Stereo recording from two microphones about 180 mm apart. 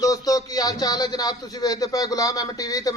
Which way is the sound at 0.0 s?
20° left (ahead or behind).